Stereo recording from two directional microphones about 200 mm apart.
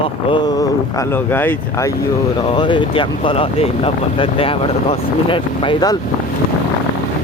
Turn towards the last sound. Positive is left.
turn(degrees=25)  # may be behind; listen again after turning